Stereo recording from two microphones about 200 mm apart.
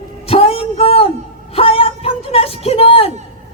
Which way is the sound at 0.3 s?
30° left (ahead or behind).